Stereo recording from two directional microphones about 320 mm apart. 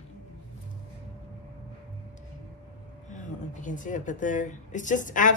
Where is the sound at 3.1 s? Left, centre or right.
Left.